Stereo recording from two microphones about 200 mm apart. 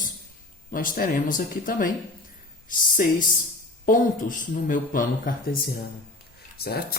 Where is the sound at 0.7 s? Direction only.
45° left (ahead or behind).